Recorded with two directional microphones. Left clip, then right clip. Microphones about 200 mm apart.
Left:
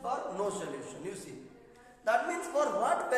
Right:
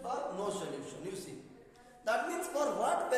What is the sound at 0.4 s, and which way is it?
A man's voice, centre (ahead or behind).